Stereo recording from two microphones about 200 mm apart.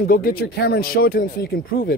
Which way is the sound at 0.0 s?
45° left (ahead or behind).